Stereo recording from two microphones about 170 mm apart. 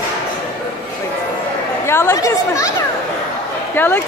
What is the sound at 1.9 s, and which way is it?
Speech, 15° left (ahead or behind).